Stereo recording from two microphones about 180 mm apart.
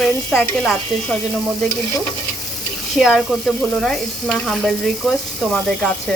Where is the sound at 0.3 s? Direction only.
Centre (ahead or behind).